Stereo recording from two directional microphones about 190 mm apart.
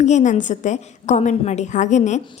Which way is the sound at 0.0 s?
40° left (ahead or behind).